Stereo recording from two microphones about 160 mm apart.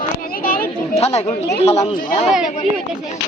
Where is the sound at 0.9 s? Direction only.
40° left (ahead or behind).